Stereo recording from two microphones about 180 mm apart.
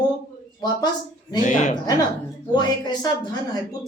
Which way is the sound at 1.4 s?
45° left (ahead or behind).